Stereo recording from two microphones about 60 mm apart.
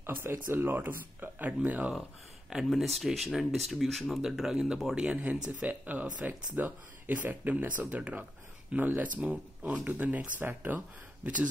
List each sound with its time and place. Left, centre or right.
0.0 s speech: right
2.5 s speech: centre
5.3 s speech: right
11.2 s speech: centre